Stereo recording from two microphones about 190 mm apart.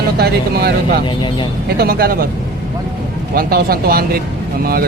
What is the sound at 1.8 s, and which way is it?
Speech, 50° right (ahead or behind).